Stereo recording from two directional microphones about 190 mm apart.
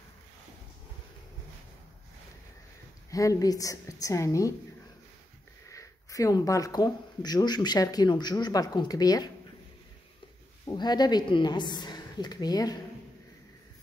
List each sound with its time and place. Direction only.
3.1 s a woman's voice: 20° left (ahead or behind)
5.7 s speech: 15° left (ahead or behind)
10.7 s speech: 20° left (ahead or behind)